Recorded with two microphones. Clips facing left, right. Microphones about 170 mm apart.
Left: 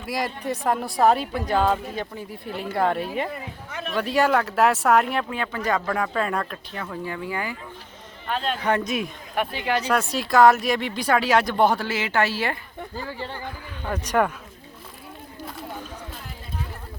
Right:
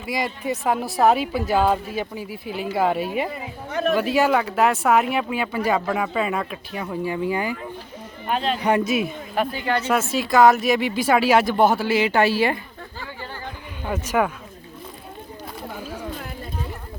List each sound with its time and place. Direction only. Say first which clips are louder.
0.0 s speech: right 2 dB; centre (ahead or behind)
3.7 s speech: right 12 dB; 40° right (ahead or behind)
3.9 s speech: even; 5° right (ahead or behind)
13.0 s speech: left 3 dB; 30° left (ahead or behind)
13.4 s speech: right 1 dB; 10° right (ahead or behind)